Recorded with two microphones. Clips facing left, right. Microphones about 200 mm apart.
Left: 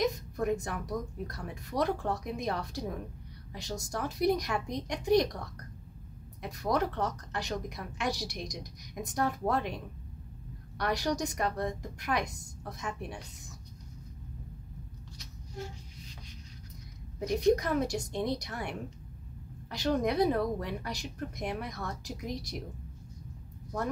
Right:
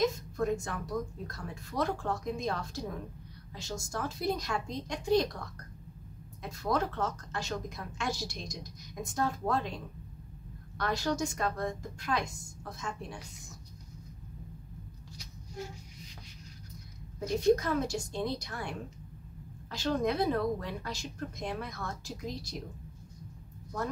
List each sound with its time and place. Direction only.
0.0 s a woman's voice: 15° left (ahead or behind)
3.9 s a woman's voice: 15° left (ahead or behind)
6.6 s a woman's voice: 15° left (ahead or behind)
10.8 s a woman's voice: 15° left (ahead or behind)
17.2 s a woman's voice: 15° left (ahead or behind)